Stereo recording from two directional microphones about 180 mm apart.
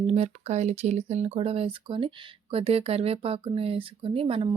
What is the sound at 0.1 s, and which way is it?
Speech, 35° right (ahead or behind).